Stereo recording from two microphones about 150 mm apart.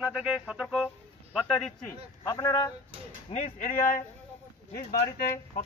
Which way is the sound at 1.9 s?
20° left (ahead or behind).